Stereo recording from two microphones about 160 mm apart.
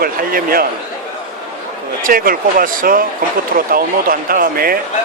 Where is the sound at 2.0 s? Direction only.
65° right (ahead or behind).